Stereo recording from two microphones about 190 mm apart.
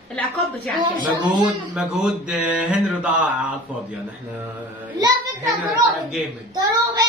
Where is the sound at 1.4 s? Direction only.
5° right (ahead or behind).